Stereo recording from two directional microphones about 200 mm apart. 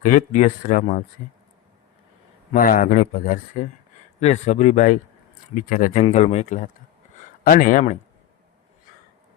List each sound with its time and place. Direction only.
0.0 s speech: 40° left (ahead or behind)
2.5 s speech: 40° left (ahead or behind)